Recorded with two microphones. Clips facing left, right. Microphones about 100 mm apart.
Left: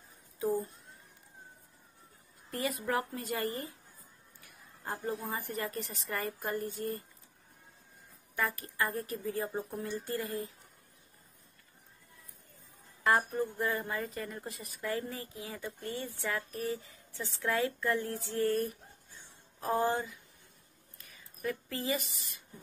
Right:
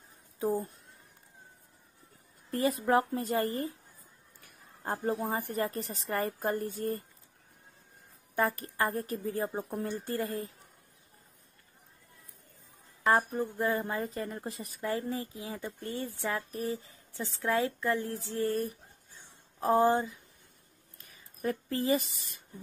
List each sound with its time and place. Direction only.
0.4 s speech: 35° right (ahead or behind)
2.5 s a woman's voice: 30° right (ahead or behind)
8.4 s a woman's voice: 40° right (ahead or behind)
13.1 s speech: 25° right (ahead or behind)
21.4 s speech: 35° right (ahead or behind)